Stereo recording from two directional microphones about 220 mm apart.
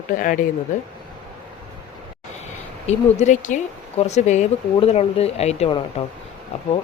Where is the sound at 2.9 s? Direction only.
30° left (ahead or behind).